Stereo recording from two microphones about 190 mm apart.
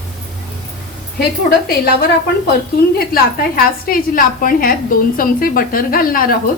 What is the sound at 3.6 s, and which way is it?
A woman's voice, 50° left (ahead or behind).